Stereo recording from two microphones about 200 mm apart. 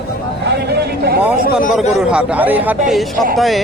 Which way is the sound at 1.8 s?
5° right (ahead or behind).